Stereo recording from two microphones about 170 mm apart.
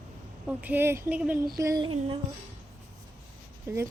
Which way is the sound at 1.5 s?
20° right (ahead or behind).